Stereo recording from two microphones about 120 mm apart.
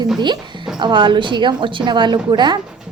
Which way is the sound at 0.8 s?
40° right (ahead or behind).